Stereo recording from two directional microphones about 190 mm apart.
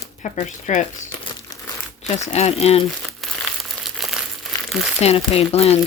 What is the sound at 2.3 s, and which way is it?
Speech, 35° left (ahead or behind).